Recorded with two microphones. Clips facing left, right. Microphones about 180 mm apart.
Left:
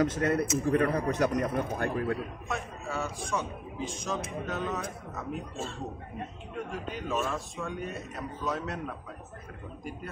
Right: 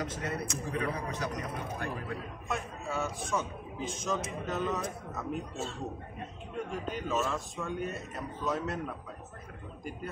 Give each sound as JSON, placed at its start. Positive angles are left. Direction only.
{"t": 0.0, "sound": "speech", "side_deg": 60}
{"t": 2.4, "sound": "a man's voice", "side_deg": 0}
{"t": 6.9, "sound": "speech", "side_deg": 0}